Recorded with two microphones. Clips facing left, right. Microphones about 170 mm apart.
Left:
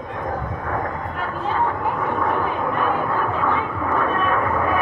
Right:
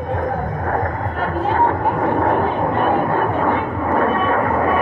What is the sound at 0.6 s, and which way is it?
Vehicle, 50° right (ahead or behind).